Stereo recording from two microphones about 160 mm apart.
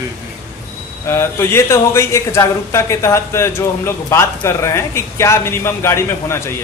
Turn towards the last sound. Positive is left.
turn(degrees=15)  # may be behind; listen again after turning